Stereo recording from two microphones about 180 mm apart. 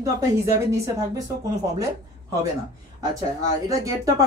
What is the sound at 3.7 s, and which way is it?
Speech, 20° right (ahead or behind).